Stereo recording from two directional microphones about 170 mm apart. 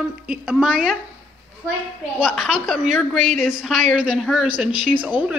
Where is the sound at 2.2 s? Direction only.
Centre (ahead or behind).